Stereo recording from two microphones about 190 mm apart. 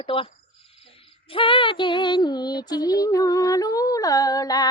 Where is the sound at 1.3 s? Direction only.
25° left (ahead or behind).